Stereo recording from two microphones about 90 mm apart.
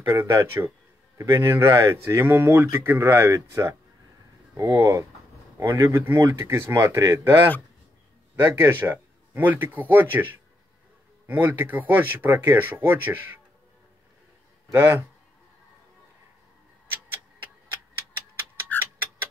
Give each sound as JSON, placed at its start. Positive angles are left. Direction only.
{"t": 0.0, "sound": "speech", "side_deg": -30}
{"t": 8.4, "sound": "speech", "side_deg": -25}
{"t": 14.7, "sound": "speech", "side_deg": -25}